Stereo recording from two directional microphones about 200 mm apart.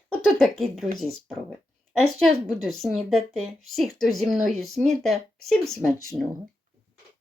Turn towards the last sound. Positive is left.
turn(degrees=0)  # may be behind; listen again after turning